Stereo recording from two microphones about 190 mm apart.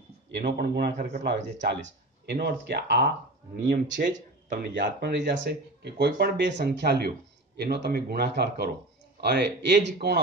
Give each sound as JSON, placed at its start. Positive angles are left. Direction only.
{"t": 0.3, "sound": "speech", "side_deg": -65}
{"t": 3.7, "sound": "speech", "side_deg": -40}
{"t": 4.7, "sound": "speech", "side_deg": -65}